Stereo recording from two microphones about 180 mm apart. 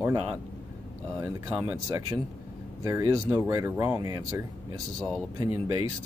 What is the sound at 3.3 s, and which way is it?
Speech, 15° right (ahead or behind).